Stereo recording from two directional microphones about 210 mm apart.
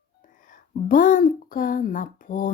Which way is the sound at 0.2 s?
40° left (ahead or behind).